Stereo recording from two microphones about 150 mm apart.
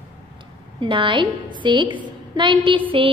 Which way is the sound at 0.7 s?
35° right (ahead or behind).